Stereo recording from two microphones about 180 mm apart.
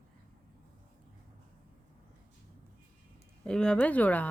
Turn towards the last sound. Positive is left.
turn(degrees=10)  # may be behind; listen again after turning